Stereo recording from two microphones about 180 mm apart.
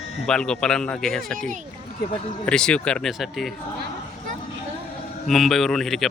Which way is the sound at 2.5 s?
5° left (ahead or behind).